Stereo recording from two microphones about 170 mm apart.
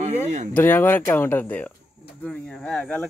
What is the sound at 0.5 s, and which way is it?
Speech, 10° left (ahead or behind).